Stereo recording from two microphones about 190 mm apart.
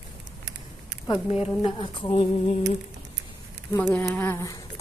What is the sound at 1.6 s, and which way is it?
Speech, 25° left (ahead or behind).